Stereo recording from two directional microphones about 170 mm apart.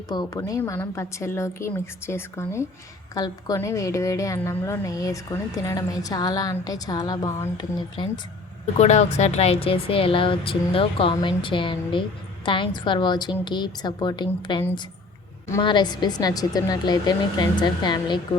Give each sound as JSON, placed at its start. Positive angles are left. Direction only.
{"t": 0.1, "sound": "a woman's voice", "side_deg": 20}
{"t": 8.8, "sound": "a woman's voice", "side_deg": 40}
{"t": 15.6, "sound": "a woman's voice", "side_deg": 25}